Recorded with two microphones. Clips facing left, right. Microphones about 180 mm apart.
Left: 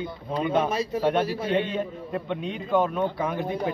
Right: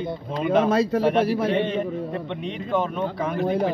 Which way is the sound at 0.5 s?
90° right.